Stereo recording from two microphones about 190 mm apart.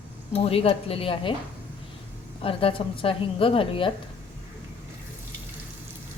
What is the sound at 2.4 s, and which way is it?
A woman's voice, 30° left (ahead or behind).